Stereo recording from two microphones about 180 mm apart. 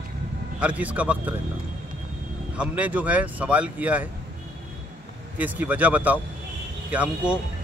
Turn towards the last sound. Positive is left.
turn(degrees=-10)  # may be behind; listen again after turning